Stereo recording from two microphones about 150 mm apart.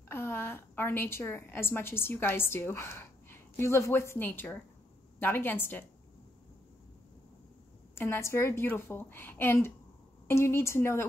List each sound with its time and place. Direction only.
0.1 s a woman's voice: 15° left (ahead or behind)
7.9 s a woman's voice: 15° left (ahead or behind)